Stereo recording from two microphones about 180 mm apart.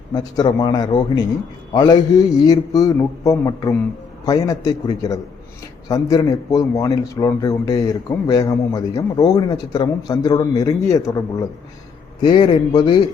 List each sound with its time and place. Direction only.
0.1 s a man's voice: 20° left (ahead or behind)
12.2 s a man's voice: 25° left (ahead or behind)